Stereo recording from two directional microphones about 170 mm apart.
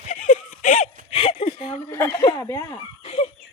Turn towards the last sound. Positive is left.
turn(degrees=40)  # may be behind; listen again after turning